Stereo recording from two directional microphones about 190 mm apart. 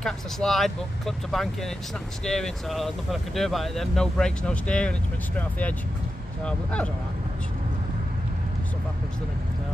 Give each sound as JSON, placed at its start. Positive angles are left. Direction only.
{"t": 0.0, "sound": "speech", "side_deg": 0}